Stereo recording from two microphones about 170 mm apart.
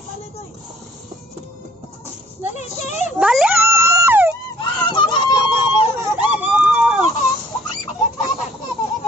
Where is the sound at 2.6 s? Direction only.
45° left (ahead or behind).